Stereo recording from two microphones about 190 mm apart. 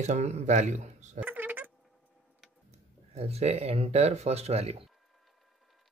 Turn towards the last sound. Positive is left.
turn(degrees=-35)  # may be behind; listen again after turning